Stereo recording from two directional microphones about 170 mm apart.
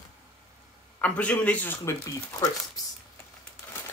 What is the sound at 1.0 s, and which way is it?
Speech, 10° left (ahead or behind).